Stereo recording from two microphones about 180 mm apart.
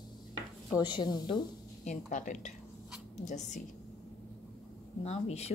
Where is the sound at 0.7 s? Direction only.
25° left (ahead or behind).